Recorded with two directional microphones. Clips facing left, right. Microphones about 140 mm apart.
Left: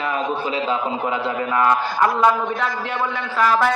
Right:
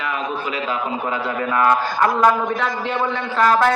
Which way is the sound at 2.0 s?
5° left (ahead or behind).